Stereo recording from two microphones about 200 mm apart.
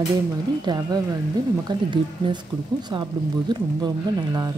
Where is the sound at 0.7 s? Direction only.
20° right (ahead or behind).